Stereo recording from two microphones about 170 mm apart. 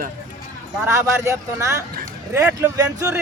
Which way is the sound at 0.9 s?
15° right (ahead or behind).